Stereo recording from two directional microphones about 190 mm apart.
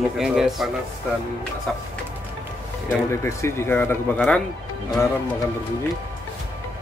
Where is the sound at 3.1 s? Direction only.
15° left (ahead or behind).